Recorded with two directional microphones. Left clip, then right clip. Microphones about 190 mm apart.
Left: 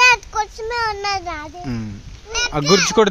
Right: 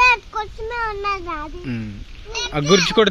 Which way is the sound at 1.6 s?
25° left (ahead or behind).